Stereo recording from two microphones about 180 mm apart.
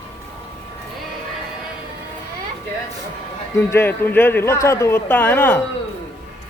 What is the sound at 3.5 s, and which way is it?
Speech, 15° left (ahead or behind).